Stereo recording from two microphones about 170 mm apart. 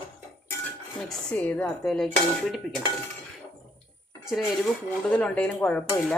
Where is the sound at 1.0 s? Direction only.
5° left (ahead or behind).